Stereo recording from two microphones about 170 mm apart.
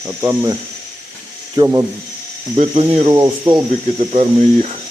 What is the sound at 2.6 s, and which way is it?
Speech, 40° right (ahead or behind).